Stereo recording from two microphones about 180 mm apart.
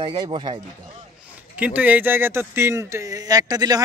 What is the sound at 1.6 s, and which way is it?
Speech, 10° right (ahead or behind).